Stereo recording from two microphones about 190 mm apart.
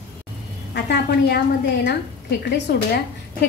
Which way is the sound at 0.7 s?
60° left (ahead or behind).